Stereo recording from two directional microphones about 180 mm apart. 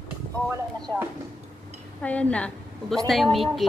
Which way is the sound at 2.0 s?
5° left (ahead or behind).